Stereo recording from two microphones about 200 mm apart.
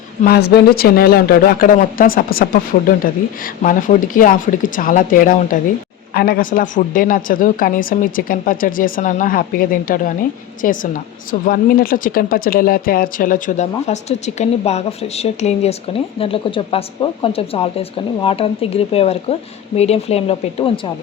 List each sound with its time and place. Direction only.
0.3 s a woman's voice: 55° left (ahead or behind); by 20.9 s 30° left (ahead or behind)